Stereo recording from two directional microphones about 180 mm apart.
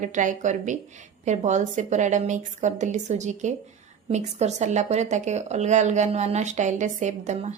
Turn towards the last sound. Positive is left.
turn(degrees=-40)  # may be behind; listen again after turning